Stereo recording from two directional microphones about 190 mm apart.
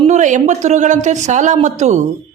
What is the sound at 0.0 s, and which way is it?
Speech, 40° right (ahead or behind).